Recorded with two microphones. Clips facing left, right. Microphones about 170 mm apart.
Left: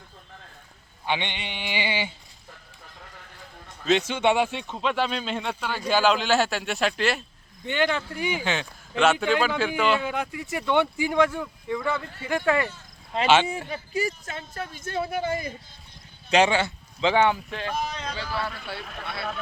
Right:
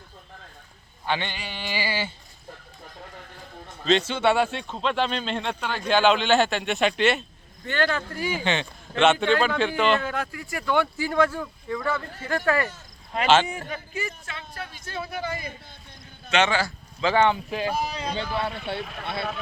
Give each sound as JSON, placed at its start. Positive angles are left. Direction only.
{"t": 1.0, "sound": "speech", "side_deg": 15}
{"t": 3.8, "sound": "speech", "side_deg": 10}
{"t": 7.6, "sound": "speech", "side_deg": 15}
{"t": 8.4, "sound": "speech", "side_deg": 0}
{"t": 13.7, "sound": "speech", "side_deg": 35}
{"t": 14.9, "sound": "speech", "side_deg": 25}
{"t": 17.2, "sound": "speech", "side_deg": 10}
{"t": 17.5, "sound": "speech", "side_deg": -10}
{"t": 18.1, "sound": "speech", "side_deg": -20}